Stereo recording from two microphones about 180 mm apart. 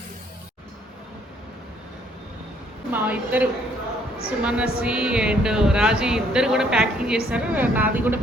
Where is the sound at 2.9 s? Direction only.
10° right (ahead or behind).